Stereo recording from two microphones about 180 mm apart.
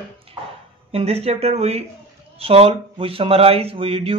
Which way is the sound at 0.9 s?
35° right (ahead or behind).